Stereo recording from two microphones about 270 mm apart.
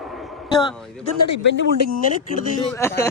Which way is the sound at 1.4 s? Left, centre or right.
Left.